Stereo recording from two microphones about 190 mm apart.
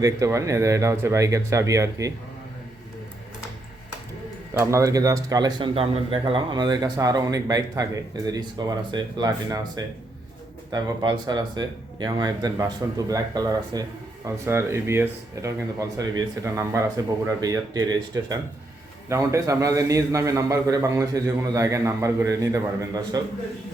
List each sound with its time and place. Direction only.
0.0 s speech: 15° right (ahead or behind)
4.5 s speech: 15° right (ahead or behind)